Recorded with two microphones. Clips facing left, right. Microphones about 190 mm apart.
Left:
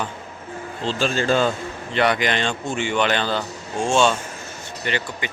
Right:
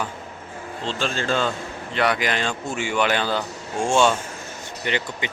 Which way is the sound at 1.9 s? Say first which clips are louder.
Left 2 dB; centre (ahead or behind).